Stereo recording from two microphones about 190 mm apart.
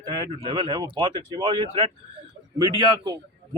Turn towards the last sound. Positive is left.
turn(degrees=-25)  # may be behind; listen again after turning